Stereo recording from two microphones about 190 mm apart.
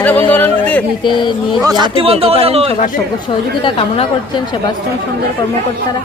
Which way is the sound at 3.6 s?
30° left (ahead or behind).